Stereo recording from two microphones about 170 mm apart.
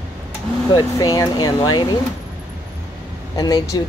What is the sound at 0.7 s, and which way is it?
Speech, 25° left (ahead or behind).